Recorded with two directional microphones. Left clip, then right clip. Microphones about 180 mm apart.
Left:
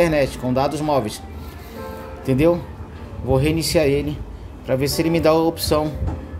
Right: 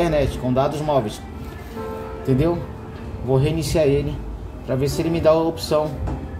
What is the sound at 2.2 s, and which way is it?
Speech, 35° left (ahead or behind).